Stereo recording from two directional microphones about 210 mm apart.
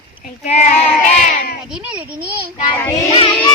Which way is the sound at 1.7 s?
5° right (ahead or behind).